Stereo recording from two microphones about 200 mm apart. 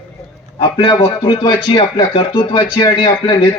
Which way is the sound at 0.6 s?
20° left (ahead or behind).